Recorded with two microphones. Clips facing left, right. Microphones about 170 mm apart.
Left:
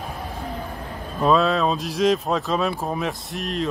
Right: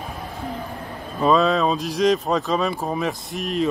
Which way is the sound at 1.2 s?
Centre (ahead or behind).